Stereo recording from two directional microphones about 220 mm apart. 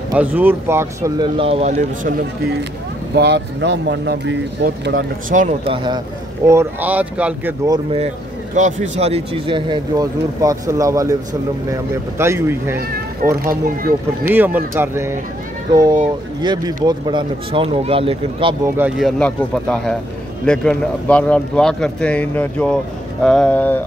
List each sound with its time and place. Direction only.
0.1 s speech: 10° right (ahead or behind); by 2.5 s 35° right (ahead or behind)
3.2 s speech: 50° right (ahead or behind); by 5.8 s 35° right (ahead or behind)
6.4 s speech: 10° right (ahead or behind)
8.5 s speech: 35° right (ahead or behind); by 12.8 s 10° right (ahead or behind)
14.3 s speech: 10° right (ahead or behind)
16.3 s speech: 20° right (ahead or behind)
18.8 s speech: 5° right (ahead or behind)